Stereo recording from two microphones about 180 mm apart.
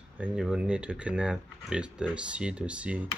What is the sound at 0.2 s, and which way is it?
Speech, 5° right (ahead or behind).